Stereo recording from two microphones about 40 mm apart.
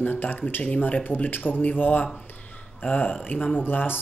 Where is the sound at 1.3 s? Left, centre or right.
Left.